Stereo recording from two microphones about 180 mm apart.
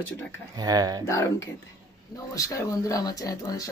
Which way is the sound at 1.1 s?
15° left (ahead or behind).